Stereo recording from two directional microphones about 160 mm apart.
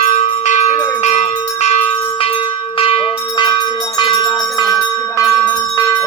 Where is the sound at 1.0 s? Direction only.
45° left (ahead or behind).